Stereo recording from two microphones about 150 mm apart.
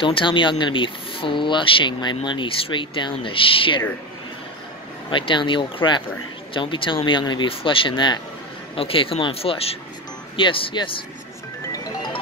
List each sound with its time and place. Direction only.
0.0 s speech: 35° left (ahead or behind)
5.1 s speech: 35° left (ahead or behind)